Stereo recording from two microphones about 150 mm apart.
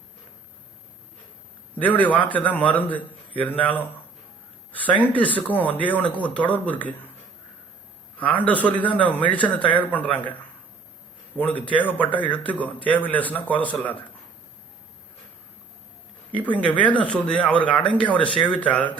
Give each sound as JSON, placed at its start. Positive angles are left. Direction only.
{"t": 1.8, "sound": "speech", "side_deg": 10}
{"t": 5.1, "sound": "speech", "side_deg": 10}
{"t": 8.2, "sound": "speech", "side_deg": 10}
{"t": 11.3, "sound": "speech", "side_deg": 10}
{"t": 16.3, "sound": "speech", "side_deg": 10}
{"t": 18.2, "sound": "speech", "side_deg": 35}
{"t": 18.4, "sound": "speech", "side_deg": 10}